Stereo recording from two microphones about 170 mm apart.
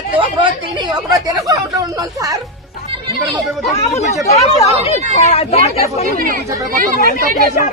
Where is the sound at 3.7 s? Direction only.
40° left (ahead or behind).